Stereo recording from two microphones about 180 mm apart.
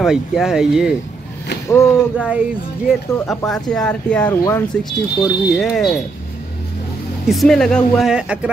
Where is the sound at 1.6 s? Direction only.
15° left (ahead or behind).